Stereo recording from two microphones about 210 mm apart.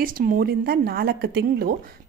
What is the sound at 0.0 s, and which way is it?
A woman's voice, 40° right (ahead or behind).